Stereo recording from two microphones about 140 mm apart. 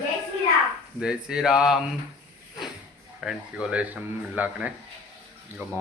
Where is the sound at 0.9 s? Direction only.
5° right (ahead or behind).